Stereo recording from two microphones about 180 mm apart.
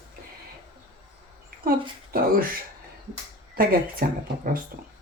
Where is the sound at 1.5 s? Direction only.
55° right (ahead or behind).